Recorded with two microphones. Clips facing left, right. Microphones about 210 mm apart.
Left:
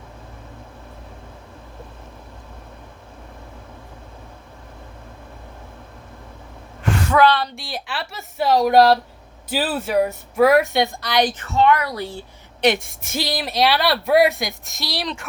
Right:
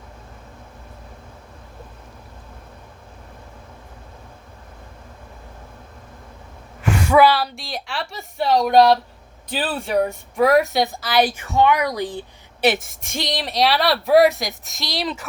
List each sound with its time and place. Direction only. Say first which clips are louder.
7.1 s speech: right 2 dB; 10° right (ahead or behind)
12.6 s speech: left 1 dB; 5° right (ahead or behind)